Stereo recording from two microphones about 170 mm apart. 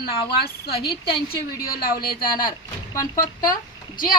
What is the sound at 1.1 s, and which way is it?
A woman's voice, 60° left (ahead or behind).